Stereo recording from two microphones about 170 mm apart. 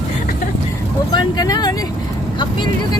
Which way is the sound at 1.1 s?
25° left (ahead or behind).